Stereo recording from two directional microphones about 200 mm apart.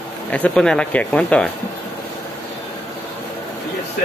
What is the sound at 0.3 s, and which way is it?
Speech, 5° left (ahead or behind).